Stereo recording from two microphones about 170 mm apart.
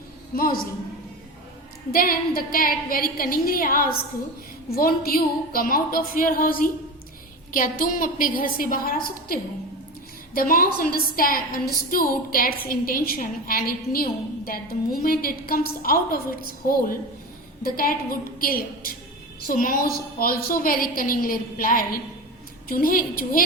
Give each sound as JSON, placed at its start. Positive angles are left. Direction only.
{"t": 0.3, "sound": "a woman's voice", "side_deg": 60}
{"t": 1.9, "sound": "a woman's voice", "side_deg": 60}
{"t": 17.6, "sound": "a woman's voice", "side_deg": 60}